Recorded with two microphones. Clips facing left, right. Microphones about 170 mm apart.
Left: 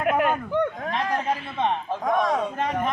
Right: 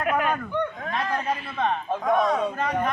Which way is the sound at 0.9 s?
20° left (ahead or behind).